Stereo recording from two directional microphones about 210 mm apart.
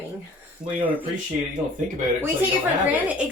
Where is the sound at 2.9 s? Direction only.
10° right (ahead or behind).